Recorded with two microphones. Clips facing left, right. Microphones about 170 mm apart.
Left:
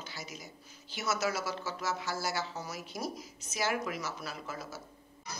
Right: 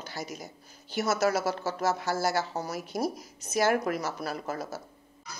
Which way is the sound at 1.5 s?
55° right (ahead or behind).